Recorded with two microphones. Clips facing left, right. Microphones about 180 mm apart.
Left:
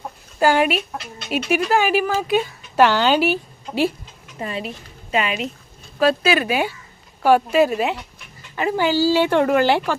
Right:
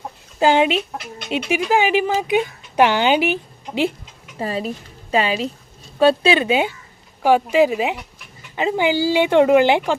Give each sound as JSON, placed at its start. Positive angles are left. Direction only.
{"t": 0.3, "sound": "speech", "side_deg": -20}
{"t": 4.4, "sound": "speech", "side_deg": -35}